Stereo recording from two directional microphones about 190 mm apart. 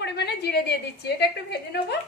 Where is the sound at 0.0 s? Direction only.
60° left (ahead or behind).